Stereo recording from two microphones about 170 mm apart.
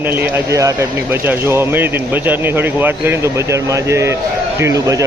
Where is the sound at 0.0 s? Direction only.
10° right (ahead or behind).